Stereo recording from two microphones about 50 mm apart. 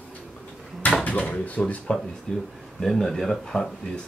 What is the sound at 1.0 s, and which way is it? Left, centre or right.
Speech, left.